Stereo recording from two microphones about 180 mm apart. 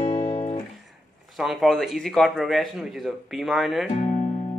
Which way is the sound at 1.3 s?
Centre (ahead or behind).